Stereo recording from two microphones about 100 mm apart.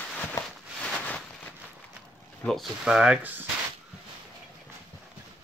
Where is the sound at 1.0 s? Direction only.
15° left (ahead or behind).